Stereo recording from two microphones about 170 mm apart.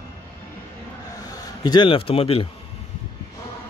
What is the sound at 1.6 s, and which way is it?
Speech, 25° left (ahead or behind).